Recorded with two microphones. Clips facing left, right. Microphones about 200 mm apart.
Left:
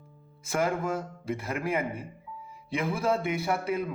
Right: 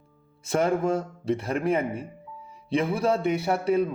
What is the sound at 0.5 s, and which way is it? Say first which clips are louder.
A man's voice: right 5 dB; 30° right (ahead or behind).